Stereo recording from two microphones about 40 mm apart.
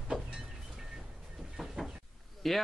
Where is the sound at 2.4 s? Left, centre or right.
Centre.